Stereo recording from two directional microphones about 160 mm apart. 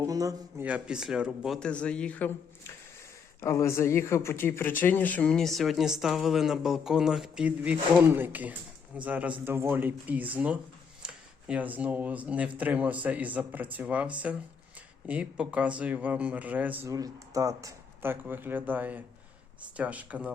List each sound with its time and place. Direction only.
0.0 s a man's voice: 20° right (ahead or behind)
0.6 s speech: 5° right (ahead or behind)
1.5 s speech: 5° left (ahead or behind); by 16.9 s 10° right (ahead or behind)
16.9 s speech: 20° right (ahead or behind)